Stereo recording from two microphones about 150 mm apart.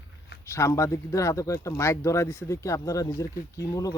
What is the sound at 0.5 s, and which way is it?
Speech, 20° left (ahead or behind).